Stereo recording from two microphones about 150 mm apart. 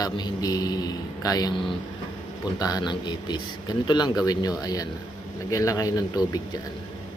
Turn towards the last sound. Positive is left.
turn(degrees=25)  # may be behind; listen again after turning